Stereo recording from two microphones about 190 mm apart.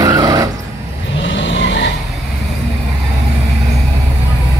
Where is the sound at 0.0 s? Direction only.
20° right (ahead or behind).